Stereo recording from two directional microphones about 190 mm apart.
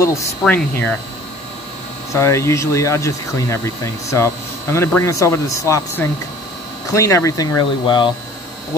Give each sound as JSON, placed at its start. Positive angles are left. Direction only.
{"t": 0.5, "sound": "speech", "side_deg": 10}
{"t": 2.1, "sound": "speech", "side_deg": 15}